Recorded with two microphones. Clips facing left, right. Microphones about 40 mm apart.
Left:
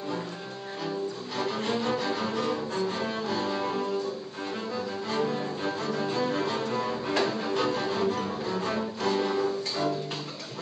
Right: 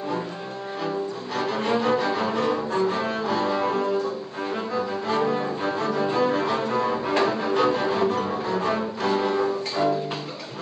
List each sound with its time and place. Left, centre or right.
0.8 s cello: centre
1.6 s cello: right
6.0 s music: centre